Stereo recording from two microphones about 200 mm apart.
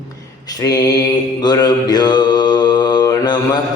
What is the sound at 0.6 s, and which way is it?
Mantra, 20° left (ahead or behind).